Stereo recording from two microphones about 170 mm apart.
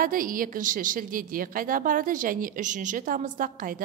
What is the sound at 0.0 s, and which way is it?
A woman's voice, 55° right (ahead or behind).